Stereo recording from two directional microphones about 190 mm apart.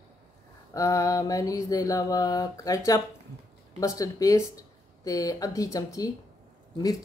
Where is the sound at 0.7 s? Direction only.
15° left (ahead or behind).